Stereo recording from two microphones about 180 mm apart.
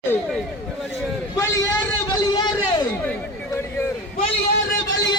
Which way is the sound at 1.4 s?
15° left (ahead or behind).